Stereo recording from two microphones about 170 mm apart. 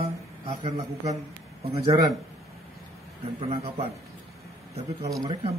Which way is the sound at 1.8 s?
25° right (ahead or behind).